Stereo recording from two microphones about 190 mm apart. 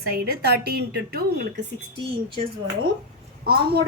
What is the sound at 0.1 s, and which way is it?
A woman's voice, 60° right (ahead or behind).